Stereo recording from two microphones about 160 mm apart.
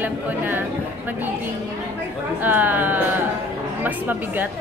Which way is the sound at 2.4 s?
10° right (ahead or behind).